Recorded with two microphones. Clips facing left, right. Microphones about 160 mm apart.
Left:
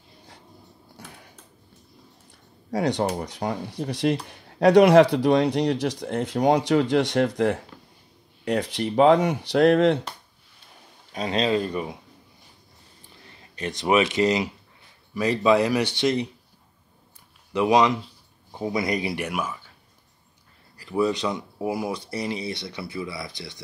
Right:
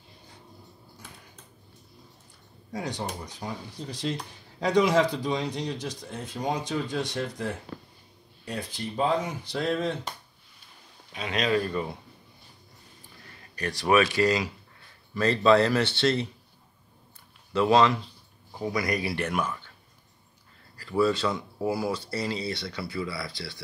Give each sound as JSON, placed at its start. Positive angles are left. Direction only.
{"t": 1.0, "sound": "a sound", "side_deg": 70}
{"t": 2.7, "sound": "a man's voice", "side_deg": 75}
{"t": 11.1, "sound": "speech", "side_deg": 30}
{"t": 13.6, "sound": "speech", "side_deg": 20}
{"t": 17.5, "sound": "speech", "side_deg": 15}
{"t": 20.7, "sound": "speech", "side_deg": 20}